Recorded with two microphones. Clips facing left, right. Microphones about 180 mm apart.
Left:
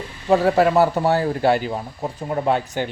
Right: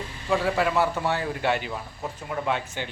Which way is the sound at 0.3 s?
40° left (ahead or behind).